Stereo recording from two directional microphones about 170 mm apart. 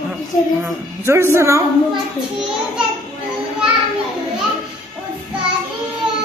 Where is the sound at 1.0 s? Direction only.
15° right (ahead or behind).